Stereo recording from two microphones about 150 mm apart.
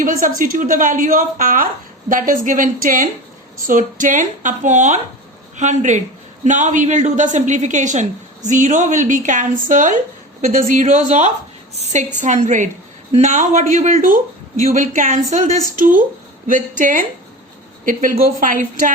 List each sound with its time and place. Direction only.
0.0 s a woman's voice: 60° right (ahead or behind)
15.5 s a woman's voice: 25° left (ahead or behind)
15.8 s a woman's voice: 60° right (ahead or behind)